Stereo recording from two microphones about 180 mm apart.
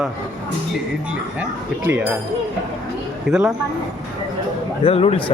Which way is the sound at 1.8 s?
10° right (ahead or behind).